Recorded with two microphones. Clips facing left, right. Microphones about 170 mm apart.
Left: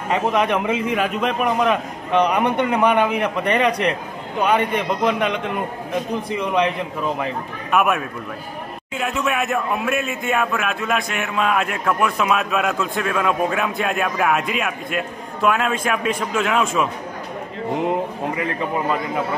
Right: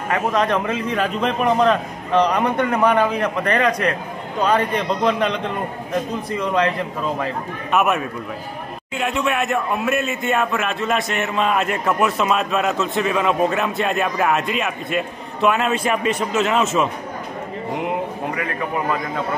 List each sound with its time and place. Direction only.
0.1 s a man's voice: 15° left (ahead or behind)
6.3 s a man's voice: 15° left (ahead or behind)
7.7 s speech: centre (ahead or behind)
18.3 s a man's voice: 25° left (ahead or behind)